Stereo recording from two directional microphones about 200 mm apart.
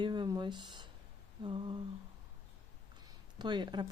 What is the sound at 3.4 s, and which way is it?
Speech, 20° right (ahead or behind).